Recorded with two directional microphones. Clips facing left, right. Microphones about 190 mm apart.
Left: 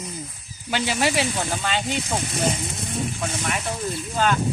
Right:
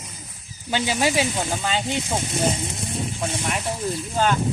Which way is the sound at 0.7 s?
15° right (ahead or behind).